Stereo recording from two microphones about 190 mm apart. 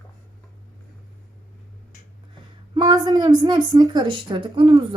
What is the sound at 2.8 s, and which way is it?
A woman's voice, 20° right (ahead or behind).